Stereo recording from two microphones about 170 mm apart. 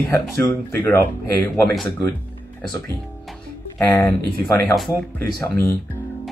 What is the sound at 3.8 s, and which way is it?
Speech, 10° left (ahead or behind).